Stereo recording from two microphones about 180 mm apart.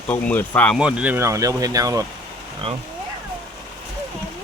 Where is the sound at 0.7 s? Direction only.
5° right (ahead or behind).